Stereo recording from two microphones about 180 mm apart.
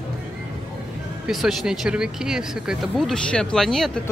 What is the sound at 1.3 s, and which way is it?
Speech, centre (ahead or behind).